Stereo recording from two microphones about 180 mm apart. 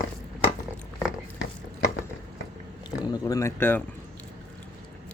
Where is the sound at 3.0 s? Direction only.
20° left (ahead or behind).